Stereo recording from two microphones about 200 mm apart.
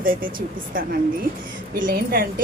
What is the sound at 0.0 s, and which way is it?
A woman's voice, 45° right (ahead or behind).